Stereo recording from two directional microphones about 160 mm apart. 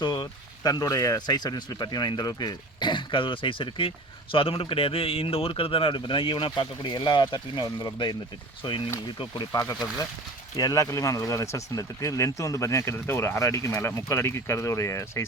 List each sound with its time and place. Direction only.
0.0 s speech: 25° left (ahead or behind)